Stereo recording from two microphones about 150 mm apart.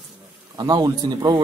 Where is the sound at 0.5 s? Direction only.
25° right (ahead or behind).